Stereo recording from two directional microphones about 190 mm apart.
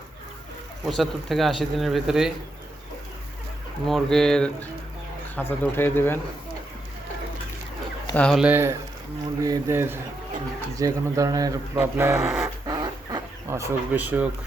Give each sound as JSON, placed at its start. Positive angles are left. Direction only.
{"t": 0.9, "sound": "speech", "side_deg": 0}
{"t": 3.8, "sound": "speech", "side_deg": 0}
{"t": 8.1, "sound": "speech", "side_deg": 0}